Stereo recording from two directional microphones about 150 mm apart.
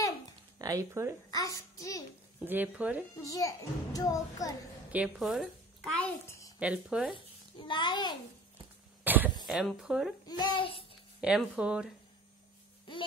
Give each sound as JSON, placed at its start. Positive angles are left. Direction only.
{"t": 0.6, "sound": "speech", "side_deg": -25}
{"t": 1.3, "sound": "a child's voice", "side_deg": 25}
{"t": 2.4, "sound": "speech", "side_deg": -10}
{"t": 3.3, "sound": "a child's voice", "side_deg": 25}
{"t": 4.9, "sound": "speech", "side_deg": -5}
{"t": 5.9, "sound": "a child's voice", "side_deg": 15}
{"t": 6.6, "sound": "speech", "side_deg": -5}
{"t": 7.2, "sound": "a child's voice", "side_deg": 30}
{"t": 9.0, "sound": "cough", "side_deg": -10}
{"t": 9.5, "sound": "speech", "side_deg": -5}
{"t": 10.2, "sound": "a child's voice", "side_deg": 30}
{"t": 11.1, "sound": "speech", "side_deg": -5}